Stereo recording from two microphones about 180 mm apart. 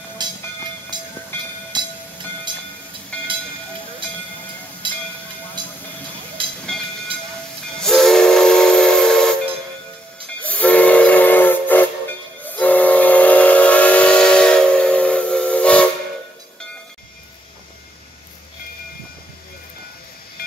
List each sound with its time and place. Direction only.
0.2 s train: 25° right (ahead or behind)
1.3 s train: 10° left (ahead or behind)
1.7 s a sound: 25° right (ahead or behind)
3.1 s train: 5° left (ahead or behind)
4.8 s train: 25° right (ahead or behind)
7.8 s steam whistle: centre (ahead or behind)
10.4 s steam whistle: 10° left (ahead or behind)
12.4 s train: 10° left (ahead or behind)